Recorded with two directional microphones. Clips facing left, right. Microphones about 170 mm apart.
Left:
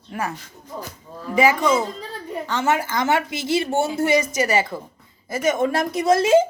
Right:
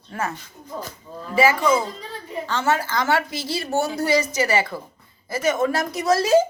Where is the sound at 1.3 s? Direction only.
15° left (ahead or behind).